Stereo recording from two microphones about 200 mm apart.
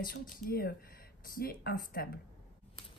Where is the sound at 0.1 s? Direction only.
50° left (ahead or behind).